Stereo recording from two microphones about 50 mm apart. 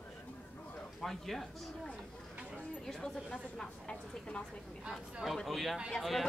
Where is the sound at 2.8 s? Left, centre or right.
Centre.